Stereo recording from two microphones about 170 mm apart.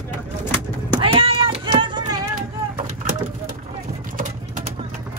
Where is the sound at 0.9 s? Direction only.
30° right (ahead or behind).